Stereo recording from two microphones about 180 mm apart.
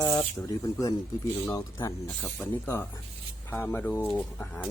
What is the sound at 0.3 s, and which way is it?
Speech, 20° left (ahead or behind).